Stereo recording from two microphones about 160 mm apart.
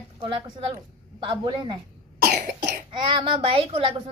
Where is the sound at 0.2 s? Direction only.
35° right (ahead or behind).